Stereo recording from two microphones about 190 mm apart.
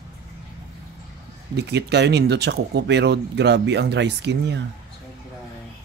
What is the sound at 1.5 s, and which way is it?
Speech, 60° right (ahead or behind).